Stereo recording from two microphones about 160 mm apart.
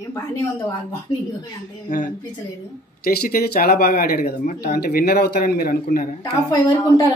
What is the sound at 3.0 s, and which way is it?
Speech, 70° left (ahead or behind).